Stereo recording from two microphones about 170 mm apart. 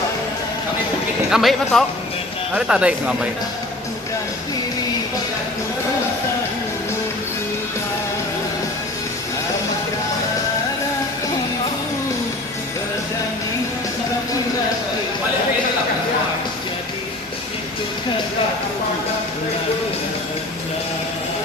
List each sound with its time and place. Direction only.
1.3 s speech: centre (ahead or behind)